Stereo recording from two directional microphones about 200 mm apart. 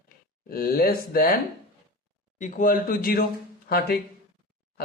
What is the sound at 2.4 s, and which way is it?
Speech, 40° left (ahead or behind).